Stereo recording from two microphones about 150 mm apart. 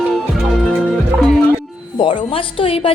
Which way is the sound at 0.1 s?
Centre (ahead or behind).